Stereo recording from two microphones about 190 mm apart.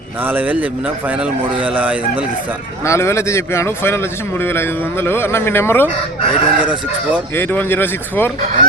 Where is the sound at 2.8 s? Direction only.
15° left (ahead or behind).